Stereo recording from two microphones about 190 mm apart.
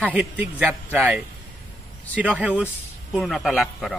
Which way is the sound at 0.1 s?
5° right (ahead or behind).